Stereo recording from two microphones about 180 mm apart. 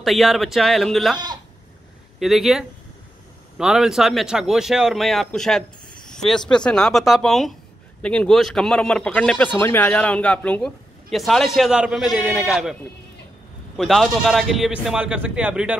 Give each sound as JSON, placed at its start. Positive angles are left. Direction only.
{"t": 0.0, "sound": "speech", "side_deg": 0}
{"t": 1.1, "sound": "speech", "side_deg": -25}
{"t": 2.1, "sound": "speech", "side_deg": 0}
{"t": 13.7, "sound": "speech", "side_deg": 0}